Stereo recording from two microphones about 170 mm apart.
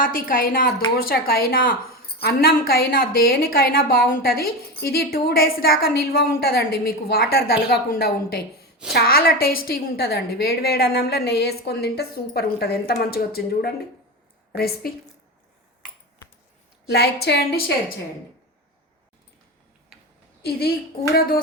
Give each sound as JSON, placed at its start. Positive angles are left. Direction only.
{"t": 0.0, "sound": "a woman's voice", "side_deg": 55}
{"t": 16.9, "sound": "a woman's voice", "side_deg": 70}
{"t": 19.9, "sound": "a sound", "side_deg": 0}
{"t": 20.4, "sound": "a woman's voice", "side_deg": 65}